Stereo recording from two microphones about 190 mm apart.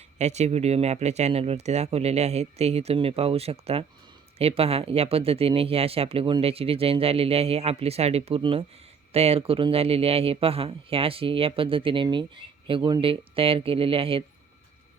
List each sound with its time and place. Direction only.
0.2 s speech: 35° right (ahead or behind)